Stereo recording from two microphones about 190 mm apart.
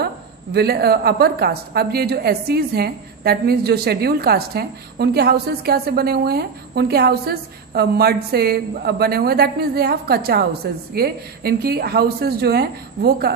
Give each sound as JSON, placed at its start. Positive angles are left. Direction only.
{"t": 0.0, "sound": "a woman's voice", "side_deg": -60}